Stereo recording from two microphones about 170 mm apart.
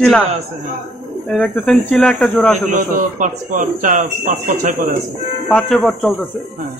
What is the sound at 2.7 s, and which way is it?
Speech, 50° right (ahead or behind).